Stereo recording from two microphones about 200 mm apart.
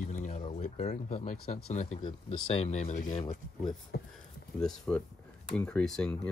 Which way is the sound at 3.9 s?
55° left (ahead or behind).